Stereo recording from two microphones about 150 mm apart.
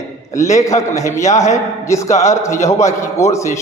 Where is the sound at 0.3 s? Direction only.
20° left (ahead or behind).